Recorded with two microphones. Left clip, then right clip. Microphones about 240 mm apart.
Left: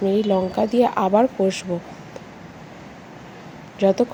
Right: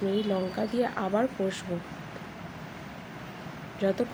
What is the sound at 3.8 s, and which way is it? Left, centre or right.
Speech, left.